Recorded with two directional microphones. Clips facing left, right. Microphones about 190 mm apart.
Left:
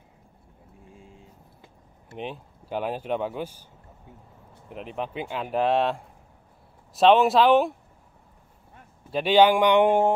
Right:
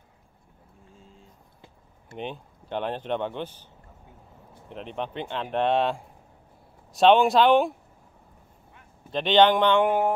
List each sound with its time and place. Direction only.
2.0 s speech: centre (ahead or behind)
4.6 s speech: 5° left (ahead or behind)
9.1 s speech: 10° left (ahead or behind)
9.8 s mantra: 25° left (ahead or behind)